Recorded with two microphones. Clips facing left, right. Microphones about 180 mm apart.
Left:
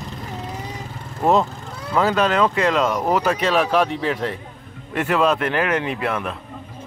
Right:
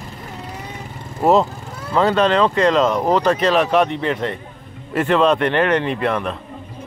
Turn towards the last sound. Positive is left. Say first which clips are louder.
# right 4 dB
turn(degrees=5)  # may be behind; listen again after turning